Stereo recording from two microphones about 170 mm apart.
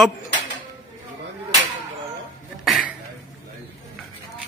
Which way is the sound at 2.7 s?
Centre (ahead or behind).